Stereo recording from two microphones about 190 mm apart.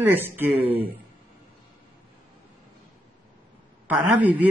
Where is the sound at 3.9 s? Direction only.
10° right (ahead or behind).